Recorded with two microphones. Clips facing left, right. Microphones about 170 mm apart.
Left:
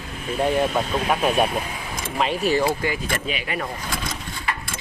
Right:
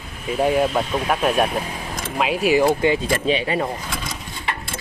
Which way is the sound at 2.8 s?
25° right (ahead or behind).